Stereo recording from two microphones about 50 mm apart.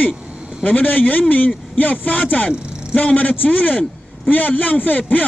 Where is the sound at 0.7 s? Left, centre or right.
Left.